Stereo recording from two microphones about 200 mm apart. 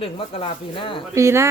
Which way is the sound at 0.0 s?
30° left (ahead or behind).